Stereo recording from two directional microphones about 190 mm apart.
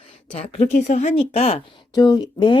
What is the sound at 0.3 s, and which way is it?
Speech, 35° left (ahead or behind).